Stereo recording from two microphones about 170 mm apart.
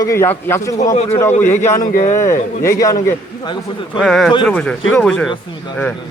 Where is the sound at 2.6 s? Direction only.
20° left (ahead or behind).